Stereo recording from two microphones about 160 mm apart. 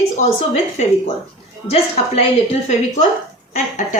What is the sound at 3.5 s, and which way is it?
Speech, 55° left (ahead or behind).